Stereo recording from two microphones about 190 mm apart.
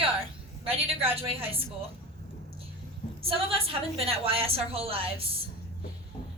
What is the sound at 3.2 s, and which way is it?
A woman's voice, 30° right (ahead or behind).